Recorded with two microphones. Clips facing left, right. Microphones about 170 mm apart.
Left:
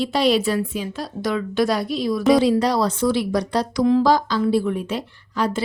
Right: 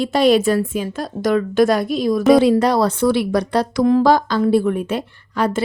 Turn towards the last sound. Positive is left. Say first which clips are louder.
# right 3 dB
turn(degrees=-55)  # may be behind; listen again after turning